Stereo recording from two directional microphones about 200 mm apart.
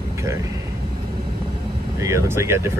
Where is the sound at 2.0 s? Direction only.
15° right (ahead or behind).